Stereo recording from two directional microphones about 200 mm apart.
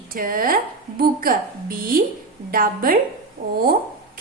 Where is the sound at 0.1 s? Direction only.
45° right (ahead or behind).